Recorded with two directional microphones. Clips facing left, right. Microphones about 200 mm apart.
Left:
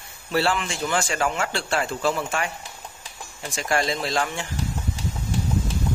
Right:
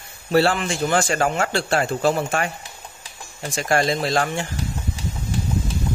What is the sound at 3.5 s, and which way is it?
Speech, 45° right (ahead or behind).